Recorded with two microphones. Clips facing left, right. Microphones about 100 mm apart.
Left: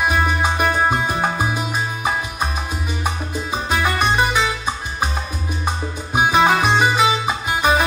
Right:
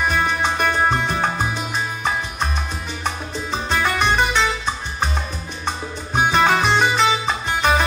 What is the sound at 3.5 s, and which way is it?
Music, 10° left (ahead or behind).